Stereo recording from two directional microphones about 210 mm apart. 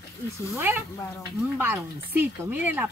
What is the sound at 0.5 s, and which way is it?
Speech, 10° right (ahead or behind).